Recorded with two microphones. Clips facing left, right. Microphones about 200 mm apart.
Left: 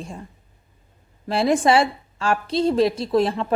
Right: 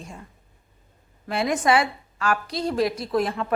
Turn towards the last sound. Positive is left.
turn(degrees=25)  # may be behind; listen again after turning